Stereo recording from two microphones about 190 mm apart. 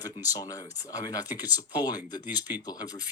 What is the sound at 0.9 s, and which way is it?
Speech, 20° left (ahead or behind).